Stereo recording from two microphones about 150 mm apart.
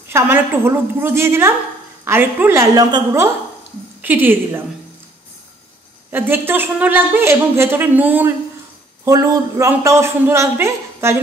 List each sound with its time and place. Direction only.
0.1 s a woman's voice: 15° right (ahead or behind)
6.1 s a woman's voice: 15° right (ahead or behind)